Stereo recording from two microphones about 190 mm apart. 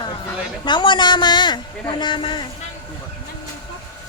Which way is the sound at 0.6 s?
25° left (ahead or behind).